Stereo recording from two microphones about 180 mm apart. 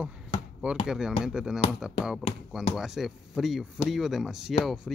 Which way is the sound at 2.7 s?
Centre (ahead or behind).